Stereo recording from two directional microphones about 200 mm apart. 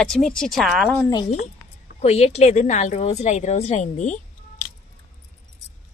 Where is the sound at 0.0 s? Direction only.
5° left (ahead or behind).